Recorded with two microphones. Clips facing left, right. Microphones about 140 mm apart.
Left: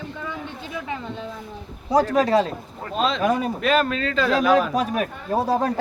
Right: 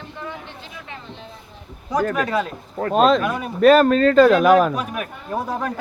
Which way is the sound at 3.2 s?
30° left (ahead or behind).